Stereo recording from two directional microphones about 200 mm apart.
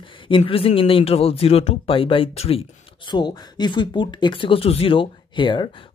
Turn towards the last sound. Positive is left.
turn(degrees=25)  # may be behind; listen again after turning